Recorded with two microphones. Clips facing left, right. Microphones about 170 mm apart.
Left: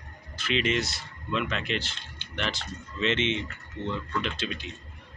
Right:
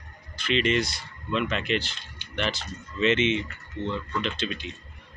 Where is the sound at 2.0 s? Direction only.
10° right (ahead or behind); by 4.7 s 5° left (ahead or behind).